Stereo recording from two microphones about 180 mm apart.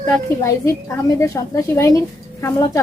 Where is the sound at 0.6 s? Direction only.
15° left (ahead or behind).